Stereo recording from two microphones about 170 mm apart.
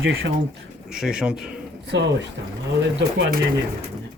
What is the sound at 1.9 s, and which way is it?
Speech, 90° right.